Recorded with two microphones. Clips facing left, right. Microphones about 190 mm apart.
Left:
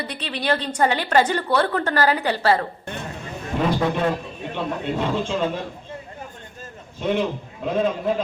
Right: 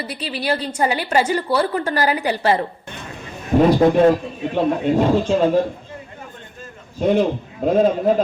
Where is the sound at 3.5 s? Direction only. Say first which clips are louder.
Right 9 dB; 40° right (ahead or behind).